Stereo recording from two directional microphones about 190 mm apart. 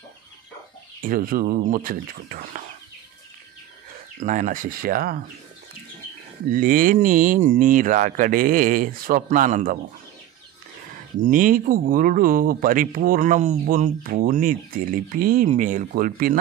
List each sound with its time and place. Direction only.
1.0 s speech: 50° right (ahead or behind)
4.2 s speech: 40° right (ahead or behind)
6.5 s speech: 45° right (ahead or behind)
11.1 s speech: 45° right (ahead or behind)